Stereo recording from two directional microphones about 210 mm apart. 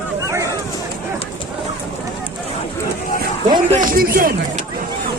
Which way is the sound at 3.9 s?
40° right (ahead or behind).